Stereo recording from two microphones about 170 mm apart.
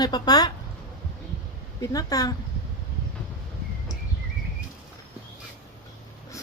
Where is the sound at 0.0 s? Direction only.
25° left (ahead or behind).